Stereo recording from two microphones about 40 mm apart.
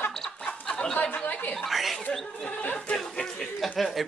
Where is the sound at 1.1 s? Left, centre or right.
Left.